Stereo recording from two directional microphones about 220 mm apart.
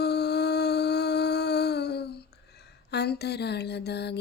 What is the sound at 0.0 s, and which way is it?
Humming, 50° left (ahead or behind).